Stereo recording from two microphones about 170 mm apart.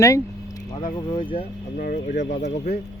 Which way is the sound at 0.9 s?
30° left (ahead or behind).